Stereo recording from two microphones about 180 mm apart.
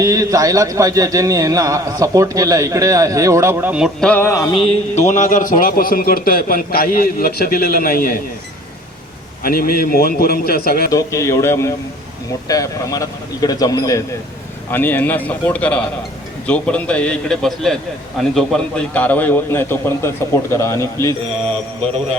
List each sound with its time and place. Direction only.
0.0 s a man's voice: 20° right (ahead or behind)
4.1 s a man's voice: 15° left (ahead or behind); by 8.2 s 55° left (ahead or behind)
9.4 s a man's voice: 55° left (ahead or behind)
10.9 s a man's voice: 15° left (ahead or behind)